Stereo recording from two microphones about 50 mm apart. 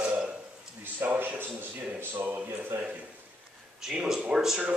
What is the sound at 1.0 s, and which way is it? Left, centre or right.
Speech, right.